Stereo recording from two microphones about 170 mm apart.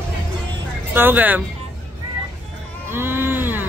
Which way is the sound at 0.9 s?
10° right (ahead or behind).